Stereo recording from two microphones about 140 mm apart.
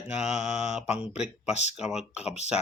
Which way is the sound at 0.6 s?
50° left (ahead or behind).